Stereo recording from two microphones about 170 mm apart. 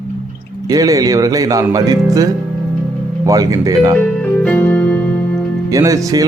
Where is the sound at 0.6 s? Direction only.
20° right (ahead or behind).